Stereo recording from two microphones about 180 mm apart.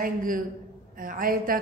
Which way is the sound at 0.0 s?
50° right (ahead or behind).